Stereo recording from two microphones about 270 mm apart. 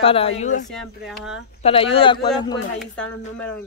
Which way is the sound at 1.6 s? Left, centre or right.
Left.